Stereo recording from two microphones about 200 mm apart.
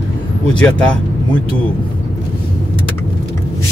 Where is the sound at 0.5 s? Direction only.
5° left (ahead or behind).